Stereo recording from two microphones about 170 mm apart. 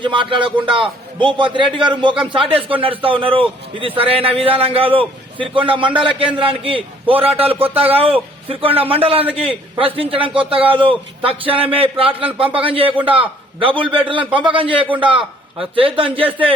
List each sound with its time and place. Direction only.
0.0 s a man's voice: 30° right (ahead or behind)